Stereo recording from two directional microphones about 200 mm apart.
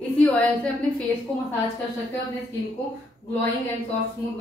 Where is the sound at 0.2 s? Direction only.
5° left (ahead or behind).